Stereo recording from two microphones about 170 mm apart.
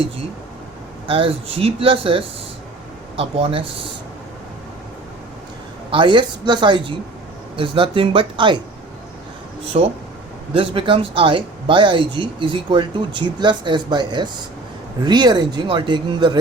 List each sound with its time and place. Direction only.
1.0 s speech: 30° right (ahead or behind)
5.9 s speech: 30° right (ahead or behind)
9.7 s speech: 35° right (ahead or behind)